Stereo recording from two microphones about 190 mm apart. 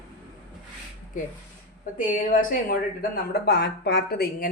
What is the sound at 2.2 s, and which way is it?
Speech, 45° left (ahead or behind).